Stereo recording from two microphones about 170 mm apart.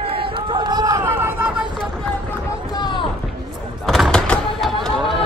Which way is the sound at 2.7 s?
25° left (ahead or behind).